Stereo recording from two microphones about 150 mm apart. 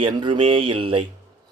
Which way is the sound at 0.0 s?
35° right (ahead or behind).